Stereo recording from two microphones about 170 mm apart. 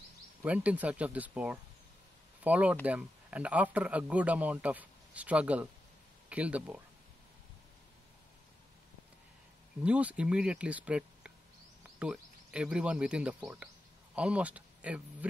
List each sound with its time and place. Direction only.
0.4 s a man's voice: 10° right (ahead or behind)
9.8 s a man's voice: 5° right (ahead or behind)